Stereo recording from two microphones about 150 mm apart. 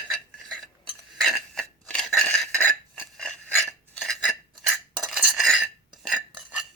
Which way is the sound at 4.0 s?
Centre (ahead or behind).